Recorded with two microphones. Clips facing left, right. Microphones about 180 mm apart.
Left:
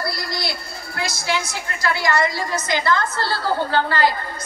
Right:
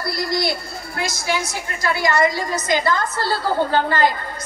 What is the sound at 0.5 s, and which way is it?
A woman's voice, 15° right (ahead or behind).